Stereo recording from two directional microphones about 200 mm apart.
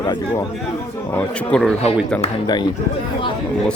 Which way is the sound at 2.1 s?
20° left (ahead or behind).